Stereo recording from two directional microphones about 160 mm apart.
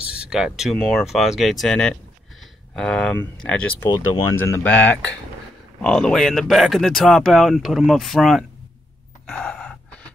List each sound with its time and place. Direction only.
0.0 s speech: 5° right (ahead or behind)
3.8 s speech: 25° left (ahead or behind)
4.4 s speech: 10° left (ahead or behind)
9.2 s gasp: 5° left (ahead or behind)